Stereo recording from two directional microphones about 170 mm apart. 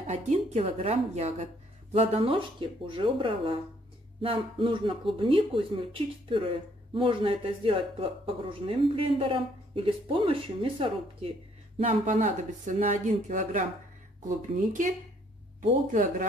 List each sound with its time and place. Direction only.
0.0 s speech: 40° right (ahead or behind)